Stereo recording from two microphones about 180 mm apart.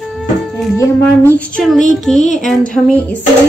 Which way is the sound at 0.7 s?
10° left (ahead or behind).